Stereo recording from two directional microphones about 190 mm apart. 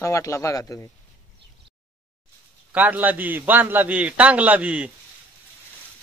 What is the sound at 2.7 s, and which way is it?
A man's voice, 10° right (ahead or behind).